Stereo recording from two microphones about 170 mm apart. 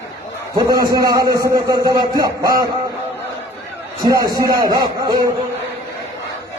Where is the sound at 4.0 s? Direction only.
20° right (ahead or behind).